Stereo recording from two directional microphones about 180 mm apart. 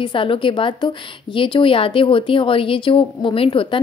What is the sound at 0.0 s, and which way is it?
A woman's voice, 30° left (ahead or behind).